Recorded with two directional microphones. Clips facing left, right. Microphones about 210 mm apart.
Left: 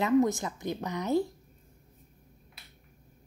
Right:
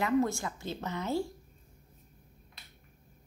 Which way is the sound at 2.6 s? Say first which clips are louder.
Even; 5° left (ahead or behind).